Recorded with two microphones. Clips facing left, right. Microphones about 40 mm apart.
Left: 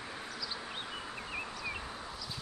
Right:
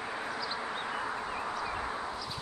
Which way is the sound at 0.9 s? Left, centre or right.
Right.